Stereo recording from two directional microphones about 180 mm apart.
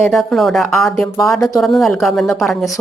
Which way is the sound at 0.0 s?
Centre (ahead or behind).